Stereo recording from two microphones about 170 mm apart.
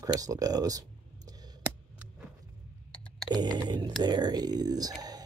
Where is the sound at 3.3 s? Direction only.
25° right (ahead or behind).